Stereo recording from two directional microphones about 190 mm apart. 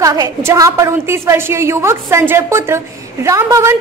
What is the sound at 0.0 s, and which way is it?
A woman's voice, 20° right (ahead or behind).